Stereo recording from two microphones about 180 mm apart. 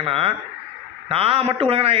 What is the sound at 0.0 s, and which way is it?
A man's voice, 30° right (ahead or behind).